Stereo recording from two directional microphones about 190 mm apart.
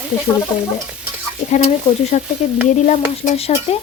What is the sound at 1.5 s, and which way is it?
Speech, 35° left (ahead or behind).